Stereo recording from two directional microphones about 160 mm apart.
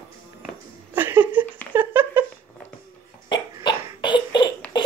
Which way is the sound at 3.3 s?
30° left (ahead or behind).